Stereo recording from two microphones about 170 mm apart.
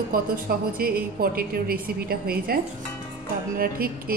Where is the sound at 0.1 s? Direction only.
60° right (ahead or behind).